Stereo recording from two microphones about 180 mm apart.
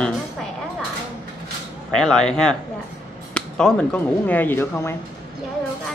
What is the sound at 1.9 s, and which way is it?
Speech, 5° left (ahead or behind).